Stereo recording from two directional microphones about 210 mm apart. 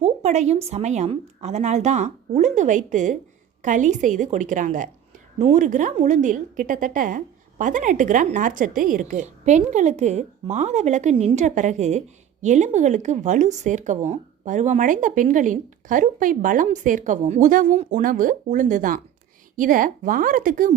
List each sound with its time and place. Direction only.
0.0 s a woman's voice: 30° right (ahead or behind)